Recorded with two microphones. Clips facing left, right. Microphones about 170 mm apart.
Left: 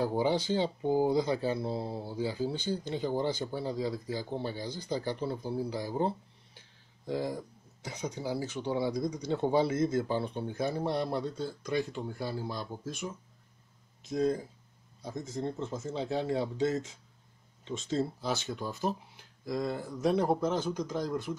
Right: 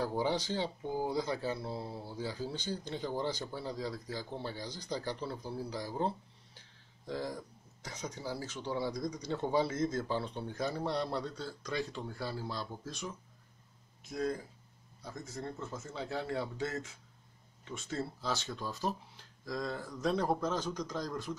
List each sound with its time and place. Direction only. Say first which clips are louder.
0.0 s speech: left 4 dB; 20° left (ahead or behind)
4.6 s speech: left 5 dB; 55° left (ahead or behind)
5.0 s speech: left 5 dB; 15° left (ahead or behind)
14.1 s a man's voice: left 6 dB; 25° left (ahead or behind)
20.7 s speech: left 4 dB; 10° left (ahead or behind)